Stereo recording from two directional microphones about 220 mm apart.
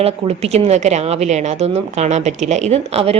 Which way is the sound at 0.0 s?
30° right (ahead or behind).